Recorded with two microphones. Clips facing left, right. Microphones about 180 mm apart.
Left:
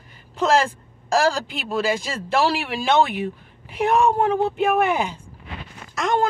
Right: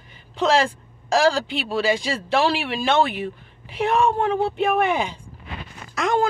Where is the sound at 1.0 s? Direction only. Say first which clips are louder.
Right 1 dB; 5° left (ahead or behind).